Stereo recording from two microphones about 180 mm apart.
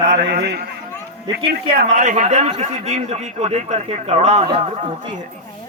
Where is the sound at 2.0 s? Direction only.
40° right (ahead or behind).